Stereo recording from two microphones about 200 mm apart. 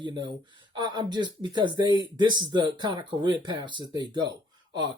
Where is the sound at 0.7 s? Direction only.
20° right (ahead or behind).